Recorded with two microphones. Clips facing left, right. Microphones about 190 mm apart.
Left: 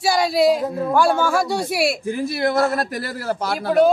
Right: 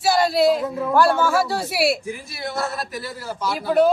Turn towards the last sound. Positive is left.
turn(degrees=60)  # may be behind; listen again after turning